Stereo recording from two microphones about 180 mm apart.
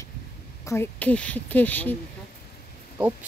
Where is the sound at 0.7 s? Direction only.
10° left (ahead or behind).